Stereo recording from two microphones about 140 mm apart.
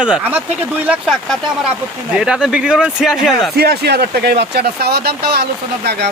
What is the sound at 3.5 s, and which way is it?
Speech, 90° right.